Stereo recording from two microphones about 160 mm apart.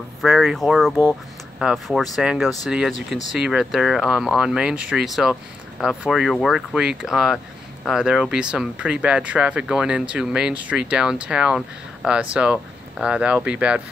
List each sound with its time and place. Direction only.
0.2 s speech: centre (ahead or behind)